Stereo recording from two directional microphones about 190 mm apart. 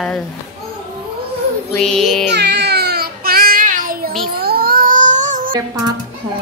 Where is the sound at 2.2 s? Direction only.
60° right (ahead or behind); by 4.1 s 45° right (ahead or behind).